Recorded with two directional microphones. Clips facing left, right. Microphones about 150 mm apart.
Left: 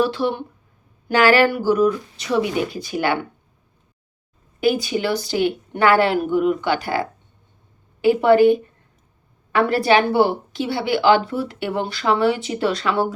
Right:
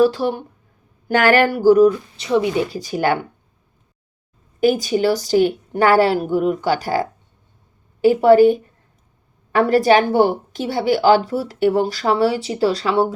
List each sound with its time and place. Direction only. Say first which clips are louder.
0.0 s speech: right 4 dB; 40° right (ahead or behind)
1.0 s a sound: even; 50° right (ahead or behind)
2.1 s speech: right 2 dB; 25° right (ahead or behind)
2.7 s speech: right 2 dB; 40° right (ahead or behind)
4.6 s speech: right 4 dB; 40° right (ahead or behind)